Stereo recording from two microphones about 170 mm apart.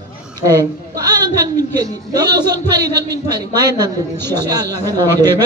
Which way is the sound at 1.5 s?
20° right (ahead or behind).